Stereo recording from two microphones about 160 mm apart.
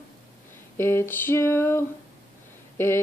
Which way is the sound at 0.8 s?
15° left (ahead or behind).